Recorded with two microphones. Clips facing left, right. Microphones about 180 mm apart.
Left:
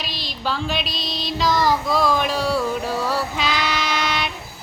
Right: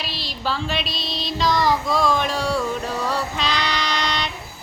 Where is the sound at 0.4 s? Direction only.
Centre (ahead or behind).